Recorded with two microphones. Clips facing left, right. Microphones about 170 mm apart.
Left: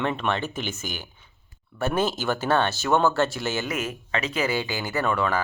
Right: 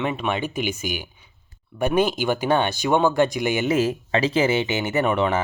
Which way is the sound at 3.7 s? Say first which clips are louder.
Right 8 dB; 30° right (ahead or behind).